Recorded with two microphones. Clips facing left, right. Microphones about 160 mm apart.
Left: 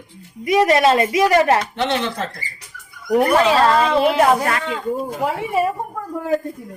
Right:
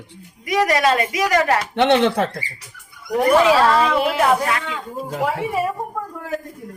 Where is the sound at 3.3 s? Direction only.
10° right (ahead or behind).